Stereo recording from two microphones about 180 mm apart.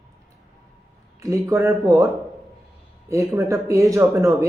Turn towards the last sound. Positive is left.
turn(degrees=-15)  # may be behind; listen again after turning